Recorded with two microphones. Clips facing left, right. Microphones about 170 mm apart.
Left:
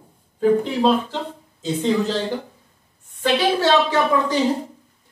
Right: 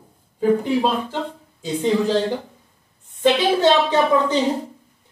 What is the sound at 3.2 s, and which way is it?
A woman's voice, 20° right (ahead or behind).